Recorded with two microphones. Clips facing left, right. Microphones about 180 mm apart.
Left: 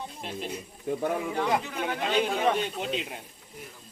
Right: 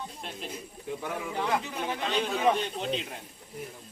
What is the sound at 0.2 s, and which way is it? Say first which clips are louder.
Speech: left 4 dB; centre (ahead or behind).